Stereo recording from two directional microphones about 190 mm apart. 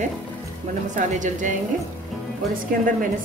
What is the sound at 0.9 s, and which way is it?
Speech, 40° right (ahead or behind).